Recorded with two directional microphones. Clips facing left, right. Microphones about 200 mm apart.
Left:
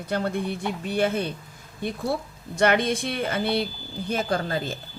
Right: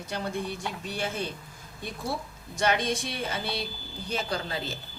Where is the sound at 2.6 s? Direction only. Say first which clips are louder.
Left 5 dB; 55° left (ahead or behind).